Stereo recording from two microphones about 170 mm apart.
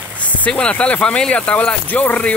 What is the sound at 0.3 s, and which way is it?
Speech, 5° left (ahead or behind).